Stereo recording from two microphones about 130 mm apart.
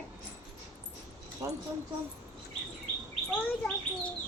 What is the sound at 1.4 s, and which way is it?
Speech, 20° right (ahead or behind).